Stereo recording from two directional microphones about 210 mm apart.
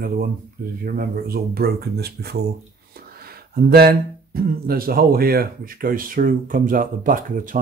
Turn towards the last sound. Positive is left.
turn(degrees=-40)  # may be behind; listen again after turning